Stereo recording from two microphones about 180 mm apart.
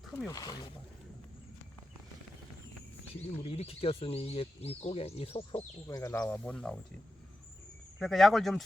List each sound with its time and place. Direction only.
0.3 s speech: 20° left (ahead or behind)
3.2 s speech: 35° left (ahead or behind); by 6.7 s 5° left (ahead or behind)
7.9 s speech: centre (ahead or behind)